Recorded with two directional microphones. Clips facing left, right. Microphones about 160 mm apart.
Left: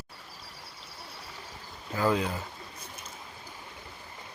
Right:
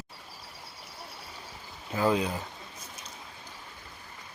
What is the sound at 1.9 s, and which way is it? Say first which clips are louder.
Speech: right 1 dB; 15° right (ahead or behind).